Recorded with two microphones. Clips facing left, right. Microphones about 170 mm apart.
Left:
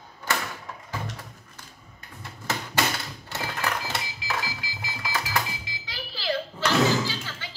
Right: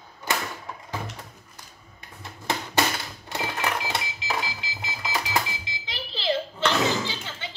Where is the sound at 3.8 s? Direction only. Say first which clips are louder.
Right 2 dB; 20° right (ahead or behind).